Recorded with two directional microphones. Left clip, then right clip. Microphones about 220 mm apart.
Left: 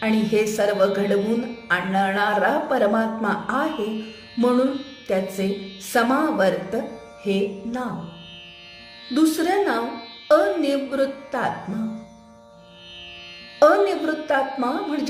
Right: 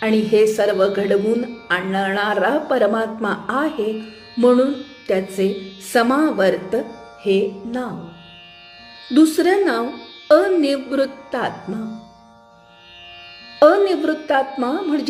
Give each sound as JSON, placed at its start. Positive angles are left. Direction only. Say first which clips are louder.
{"t": 0.0, "sound": "speech", "louder": "right 6 dB", "side_deg": -25}
{"t": 4.4, "sound": "music", "louder": "right 6 dB", "side_deg": -30}
{"t": 5.0, "sound": "speech", "louder": "right 4 dB", "side_deg": -30}
{"t": 9.1, "sound": "speech", "louder": "right 5 dB", "side_deg": -30}
{"t": 13.6, "sound": "speech", "louder": "right 3 dB", "side_deg": -25}